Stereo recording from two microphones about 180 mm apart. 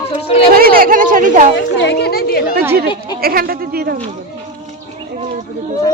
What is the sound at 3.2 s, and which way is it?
Speech, 55° right (ahead or behind).